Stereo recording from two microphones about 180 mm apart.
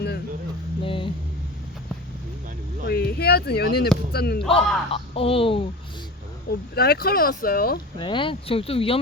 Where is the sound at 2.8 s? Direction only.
60° left (ahead or behind).